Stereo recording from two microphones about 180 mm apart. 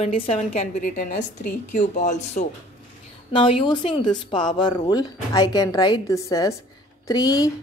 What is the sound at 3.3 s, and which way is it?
Speech, 25° left (ahead or behind).